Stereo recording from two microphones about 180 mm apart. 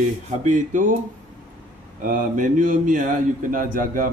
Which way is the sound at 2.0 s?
50° right (ahead or behind).